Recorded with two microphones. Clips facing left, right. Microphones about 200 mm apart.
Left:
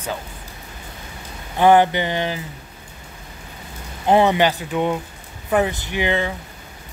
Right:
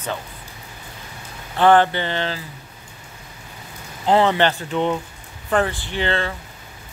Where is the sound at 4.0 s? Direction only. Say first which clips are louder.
Left 1 dB; 15° left (ahead or behind).